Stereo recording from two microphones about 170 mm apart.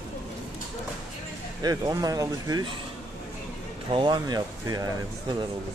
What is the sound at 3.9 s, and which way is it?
Speech, 30° right (ahead or behind).